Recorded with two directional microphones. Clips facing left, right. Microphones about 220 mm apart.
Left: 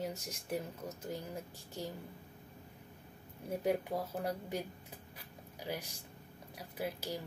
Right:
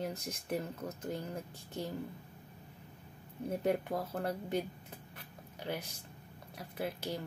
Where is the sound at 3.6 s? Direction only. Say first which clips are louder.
Even; 5° left (ahead or behind).